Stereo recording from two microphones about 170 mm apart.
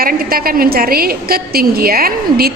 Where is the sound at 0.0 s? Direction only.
60° right (ahead or behind).